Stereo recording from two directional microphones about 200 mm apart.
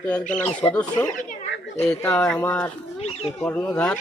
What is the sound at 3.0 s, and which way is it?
Speech, 30° left (ahead or behind).